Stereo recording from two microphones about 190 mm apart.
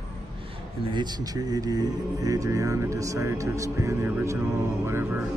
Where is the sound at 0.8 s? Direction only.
25° right (ahead or behind).